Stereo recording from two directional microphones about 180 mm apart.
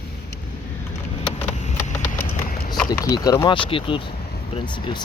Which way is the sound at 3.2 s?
25° left (ahead or behind).